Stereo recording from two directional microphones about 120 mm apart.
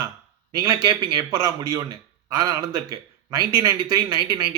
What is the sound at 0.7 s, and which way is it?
Speech, 40° right (ahead or behind).